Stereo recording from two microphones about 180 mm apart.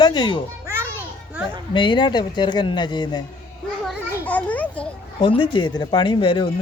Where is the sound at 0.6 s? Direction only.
15° right (ahead or behind).